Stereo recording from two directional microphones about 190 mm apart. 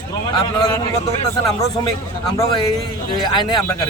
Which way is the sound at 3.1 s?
25° left (ahead or behind).